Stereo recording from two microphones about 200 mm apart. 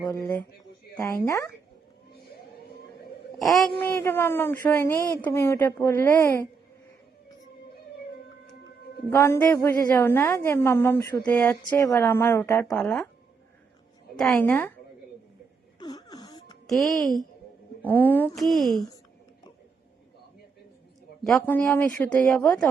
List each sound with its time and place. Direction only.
0.0 s a woman's voice: 15° left (ahead or behind)
3.3 s a woman's voice: centre (ahead or behind)
9.0 s a woman's voice: 10° left (ahead or behind)
14.2 s a woman's voice: 5° left (ahead or behind)
15.8 s music: 20° left (ahead or behind)
16.6 s a woman's voice: centre (ahead or behind)
21.3 s a woman's voice: 10° left (ahead or behind)